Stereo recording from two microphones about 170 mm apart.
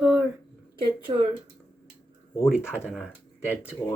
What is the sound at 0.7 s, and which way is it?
Speech, 30° right (ahead or behind).